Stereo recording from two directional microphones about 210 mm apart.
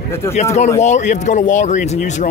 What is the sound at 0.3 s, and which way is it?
A man's voice, 35° left (ahead or behind).